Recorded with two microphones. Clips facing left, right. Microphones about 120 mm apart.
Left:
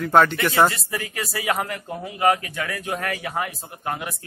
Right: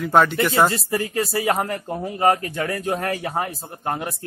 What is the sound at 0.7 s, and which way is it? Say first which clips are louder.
Speech: right 4 dB; 30° right (ahead or behind).